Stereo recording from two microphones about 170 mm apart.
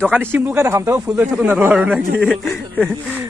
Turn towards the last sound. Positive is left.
turn(degrees=5)  # may be behind; listen again after turning